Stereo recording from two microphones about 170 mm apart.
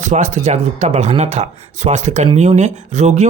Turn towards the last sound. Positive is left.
turn(degrees=-45)  # may be behind; listen again after turning